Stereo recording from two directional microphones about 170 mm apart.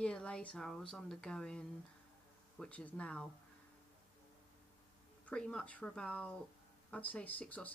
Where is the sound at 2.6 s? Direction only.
5° left (ahead or behind).